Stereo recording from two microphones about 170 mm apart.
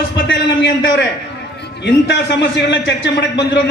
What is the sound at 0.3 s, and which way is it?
A man's voice, 90° left.